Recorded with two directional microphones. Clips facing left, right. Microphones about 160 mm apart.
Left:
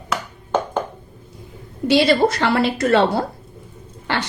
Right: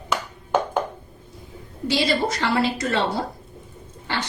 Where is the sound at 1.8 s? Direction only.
65° left (ahead or behind).